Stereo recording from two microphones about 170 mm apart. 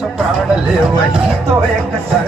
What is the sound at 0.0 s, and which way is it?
Music, centre (ahead or behind).